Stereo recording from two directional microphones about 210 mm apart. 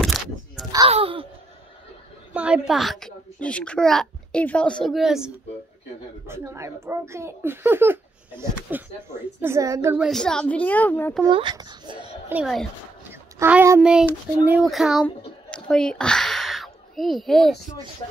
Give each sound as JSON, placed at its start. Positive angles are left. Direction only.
{"t": 0.0, "sound": "a sound", "side_deg": 0}
{"t": 0.7, "sound": "a sound", "side_deg": -25}
{"t": 2.3, "sound": "a child's voice", "side_deg": -5}
{"t": 10.0, "sound": "a woman's voice", "side_deg": 5}
{"t": 11.2, "sound": "a child's voice", "side_deg": -25}
{"t": 12.3, "sound": "a child's voice", "side_deg": -5}